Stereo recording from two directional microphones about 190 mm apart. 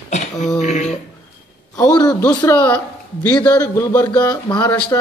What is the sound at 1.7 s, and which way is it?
Speech, 20° left (ahead or behind).